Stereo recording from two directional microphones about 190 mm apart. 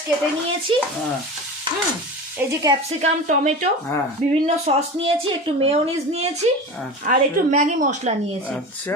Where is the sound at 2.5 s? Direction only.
20° right (ahead or behind).